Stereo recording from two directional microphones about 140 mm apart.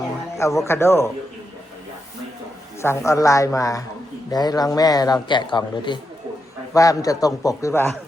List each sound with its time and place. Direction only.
0.3 s a man's voice: 20° left (ahead or behind)
3.1 s a man's voice: 20° left (ahead or behind)
6.7 s a man's voice: 25° left (ahead or behind)